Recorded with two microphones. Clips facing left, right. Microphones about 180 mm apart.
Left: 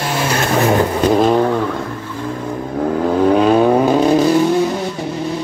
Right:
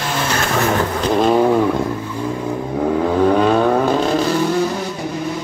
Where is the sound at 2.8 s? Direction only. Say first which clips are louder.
Left 1 dB; centre (ahead or behind); by 4.3 s 15° left (ahead or behind).